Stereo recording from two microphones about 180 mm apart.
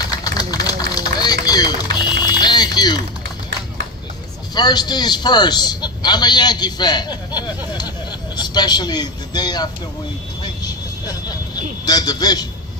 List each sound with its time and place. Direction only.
0.3 s run: 20° left (ahead or behind)
1.5 s vehicle: 20° left (ahead or behind)
4.5 s a man's voice: 25° left (ahead or behind)
10.4 s vehicle: 20° left (ahead or behind)
11.9 s a man's voice: 20° left (ahead or behind)